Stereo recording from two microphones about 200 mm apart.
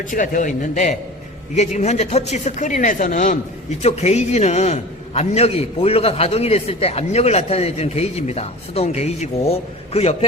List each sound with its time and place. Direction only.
0.1 s a man's voice: 40° left (ahead or behind)